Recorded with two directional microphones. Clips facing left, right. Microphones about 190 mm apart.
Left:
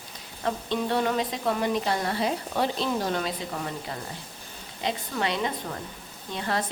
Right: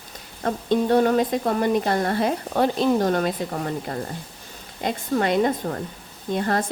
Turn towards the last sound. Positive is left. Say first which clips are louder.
# right 6 dB
turn(degrees=-50)  # may be behind; listen again after turning